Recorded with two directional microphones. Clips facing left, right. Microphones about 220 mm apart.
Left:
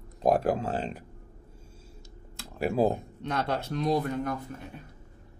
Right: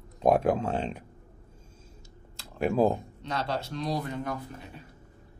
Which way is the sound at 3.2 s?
55° left (ahead or behind).